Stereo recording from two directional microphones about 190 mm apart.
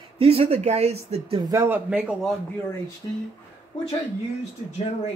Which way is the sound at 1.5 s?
10° right (ahead or behind).